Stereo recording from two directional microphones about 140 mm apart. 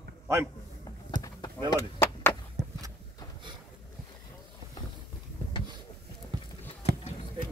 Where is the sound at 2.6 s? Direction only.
55° right (ahead or behind).